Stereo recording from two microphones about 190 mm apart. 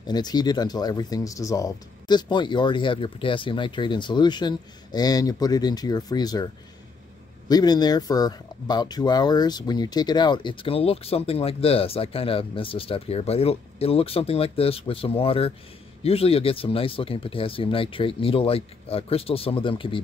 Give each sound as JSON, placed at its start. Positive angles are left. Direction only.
{"t": 0.0, "sound": "speech", "side_deg": 20}